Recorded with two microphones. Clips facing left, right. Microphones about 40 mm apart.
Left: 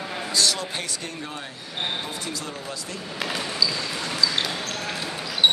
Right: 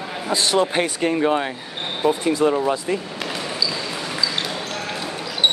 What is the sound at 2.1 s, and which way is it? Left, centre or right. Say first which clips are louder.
Speech: right 15 dB; right.